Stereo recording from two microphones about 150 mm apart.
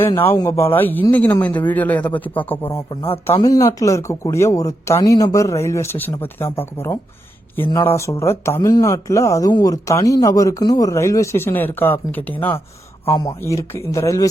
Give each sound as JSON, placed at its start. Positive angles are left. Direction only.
{"t": 0.0, "sound": "speech", "side_deg": 15}
{"t": 3.4, "sound": "speech", "side_deg": 25}